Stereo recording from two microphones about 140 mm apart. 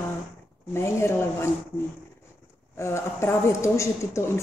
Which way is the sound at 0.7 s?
20° left (ahead or behind).